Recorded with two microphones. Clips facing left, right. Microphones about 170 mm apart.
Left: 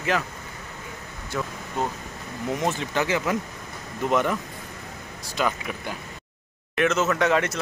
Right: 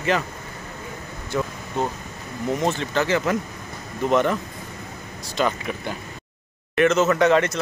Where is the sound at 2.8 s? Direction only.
10° left (ahead or behind).